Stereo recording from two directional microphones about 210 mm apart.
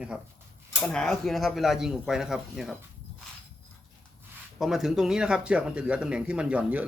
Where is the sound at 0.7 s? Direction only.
5° left (ahead or behind).